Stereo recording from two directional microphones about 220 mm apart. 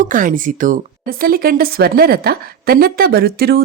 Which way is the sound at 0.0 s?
35° right (ahead or behind).